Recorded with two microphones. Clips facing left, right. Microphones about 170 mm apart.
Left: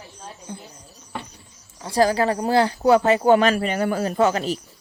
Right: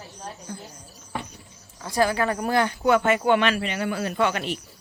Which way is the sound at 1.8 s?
30° left (ahead or behind).